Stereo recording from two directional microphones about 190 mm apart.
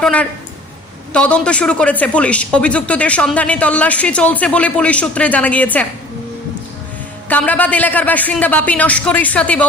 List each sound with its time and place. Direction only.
0.0 s speech: 5° left (ahead or behind)
7.3 s speech: 10° left (ahead or behind)